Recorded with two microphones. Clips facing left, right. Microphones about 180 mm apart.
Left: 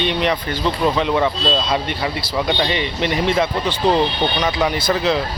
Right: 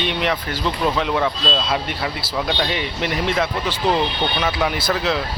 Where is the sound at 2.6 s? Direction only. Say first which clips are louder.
Left 3 dB; centre (ahead or behind).